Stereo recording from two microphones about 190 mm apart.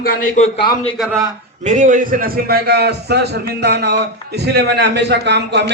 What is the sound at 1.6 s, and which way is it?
A man's voice, 40° right (ahead or behind).